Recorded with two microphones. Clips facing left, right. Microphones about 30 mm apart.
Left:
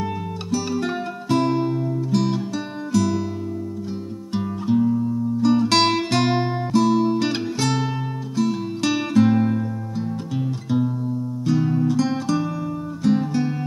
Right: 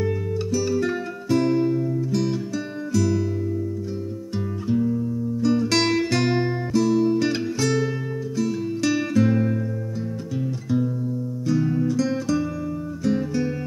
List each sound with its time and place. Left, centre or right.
0.0 s music: left
4.3 s music: left